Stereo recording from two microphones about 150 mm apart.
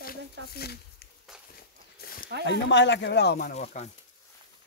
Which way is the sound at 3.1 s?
90° left.